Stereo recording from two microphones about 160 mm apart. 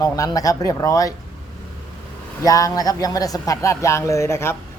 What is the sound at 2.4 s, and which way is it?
A man's voice, 20° left (ahead or behind).